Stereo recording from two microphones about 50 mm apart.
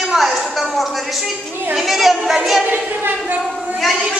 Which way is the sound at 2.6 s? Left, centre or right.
Right.